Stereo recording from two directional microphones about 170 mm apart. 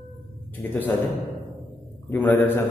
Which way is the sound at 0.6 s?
10° left (ahead or behind).